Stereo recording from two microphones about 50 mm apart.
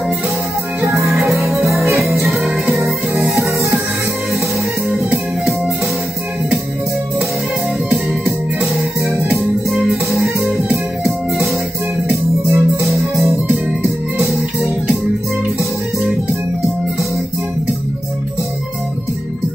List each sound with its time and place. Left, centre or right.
0.7 s music: right
2.6 s music: right
9.7 s music: centre
10.1 s music: right
12.1 s music: right